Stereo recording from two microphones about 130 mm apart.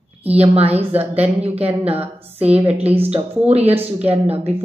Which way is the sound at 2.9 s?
50° right (ahead or behind).